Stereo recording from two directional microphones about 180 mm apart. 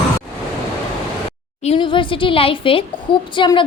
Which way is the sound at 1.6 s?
25° left (ahead or behind).